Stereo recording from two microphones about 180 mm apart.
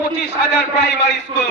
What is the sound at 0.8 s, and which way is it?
Speech, 75° left (ahead or behind).